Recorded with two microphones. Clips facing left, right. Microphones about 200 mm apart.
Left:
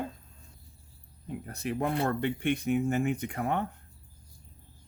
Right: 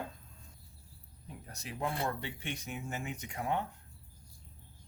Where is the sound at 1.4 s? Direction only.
60° left (ahead or behind).